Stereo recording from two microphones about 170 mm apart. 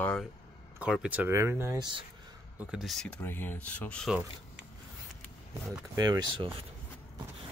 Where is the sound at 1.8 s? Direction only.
25° right (ahead or behind).